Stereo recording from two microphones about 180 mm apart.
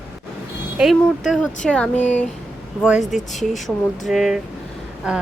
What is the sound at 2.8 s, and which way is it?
A woman's voice, 5° right (ahead or behind).